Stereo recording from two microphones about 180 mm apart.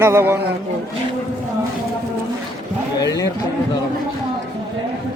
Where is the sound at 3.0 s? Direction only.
20° left (ahead or behind).